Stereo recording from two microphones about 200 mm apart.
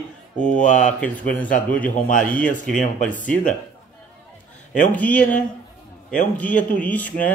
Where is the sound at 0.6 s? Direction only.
35° left (ahead or behind).